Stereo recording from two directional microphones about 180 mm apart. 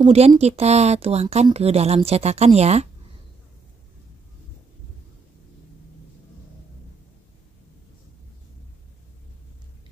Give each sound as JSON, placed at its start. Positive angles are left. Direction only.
{"t": 0.0, "sound": "speech", "side_deg": -30}